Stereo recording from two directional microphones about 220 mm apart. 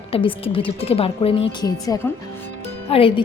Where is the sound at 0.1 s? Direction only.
25° left (ahead or behind).